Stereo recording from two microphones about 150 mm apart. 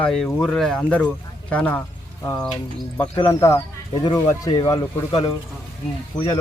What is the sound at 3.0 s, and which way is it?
Speech, 20° left (ahead or behind).